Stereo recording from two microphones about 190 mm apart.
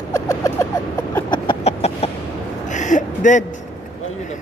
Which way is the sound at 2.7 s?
40° left (ahead or behind).